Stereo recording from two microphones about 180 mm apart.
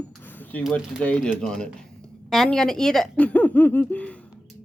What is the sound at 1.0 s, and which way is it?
A woman's voice, 5° left (ahead or behind).